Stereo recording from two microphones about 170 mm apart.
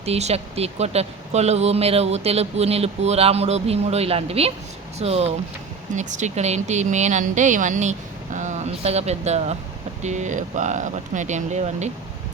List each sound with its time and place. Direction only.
0.0 s speech: 40° right (ahead or behind)